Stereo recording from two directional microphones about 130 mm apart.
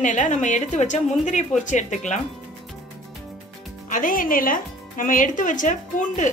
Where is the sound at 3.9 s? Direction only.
90° left; by 6.3 s 70° left (ahead or behind).